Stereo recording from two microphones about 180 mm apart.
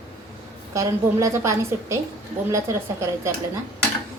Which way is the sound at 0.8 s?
15° right (ahead or behind).